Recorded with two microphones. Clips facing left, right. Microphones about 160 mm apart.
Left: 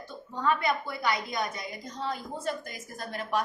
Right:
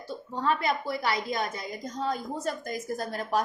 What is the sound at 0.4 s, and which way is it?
A woman's voice, 35° right (ahead or behind).